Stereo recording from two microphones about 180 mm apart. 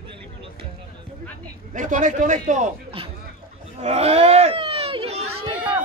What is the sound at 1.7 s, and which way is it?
A man's voice, 45° right (ahead or behind).